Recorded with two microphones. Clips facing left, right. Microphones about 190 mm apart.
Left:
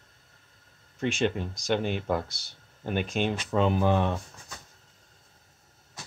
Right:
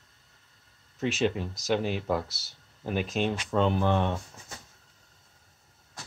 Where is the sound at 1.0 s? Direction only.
5° right (ahead or behind).